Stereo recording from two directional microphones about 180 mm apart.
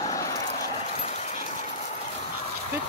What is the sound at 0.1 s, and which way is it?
Vehicle, 20° left (ahead or behind).